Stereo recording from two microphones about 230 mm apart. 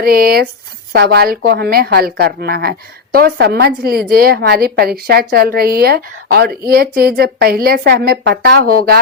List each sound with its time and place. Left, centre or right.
0.0 s a woman's voice: right